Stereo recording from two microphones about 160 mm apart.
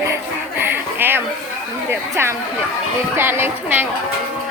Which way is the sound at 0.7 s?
15° right (ahead or behind).